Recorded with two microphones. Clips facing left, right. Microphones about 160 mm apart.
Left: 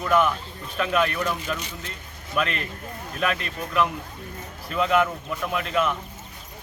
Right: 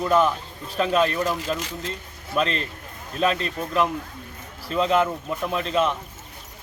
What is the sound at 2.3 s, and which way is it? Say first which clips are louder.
Speech: right 2 dB; 30° right (ahead or behind).